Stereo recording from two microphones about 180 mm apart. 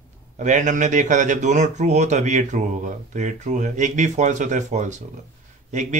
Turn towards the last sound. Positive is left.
turn(degrees=-40)  # may be behind; listen again after turning